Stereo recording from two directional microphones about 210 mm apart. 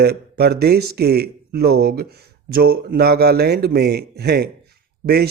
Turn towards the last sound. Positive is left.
turn(degrees=-50)  # may be behind; listen again after turning